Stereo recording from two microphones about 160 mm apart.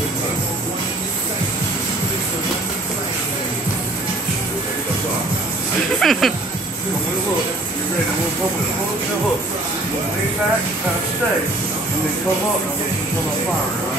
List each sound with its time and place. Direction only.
5.9 s speech: centre (ahead or behind)